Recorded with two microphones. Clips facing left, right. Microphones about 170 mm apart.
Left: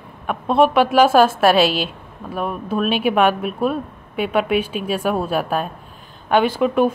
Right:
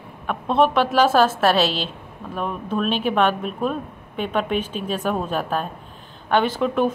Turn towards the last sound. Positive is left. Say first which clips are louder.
# left 4 dB
turn(degrees=10)  # may be behind; listen again after turning